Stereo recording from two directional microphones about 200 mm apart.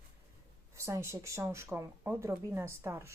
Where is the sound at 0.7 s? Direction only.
15° right (ahead or behind).